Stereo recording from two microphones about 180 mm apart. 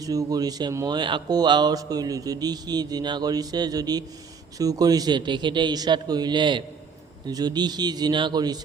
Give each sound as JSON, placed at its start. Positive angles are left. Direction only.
{"t": 0.0, "sound": "speech", "side_deg": -20}